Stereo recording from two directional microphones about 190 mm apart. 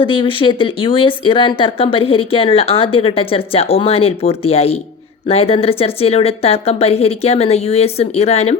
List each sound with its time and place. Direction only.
0.0 s a woman's voice: 25° left (ahead or behind)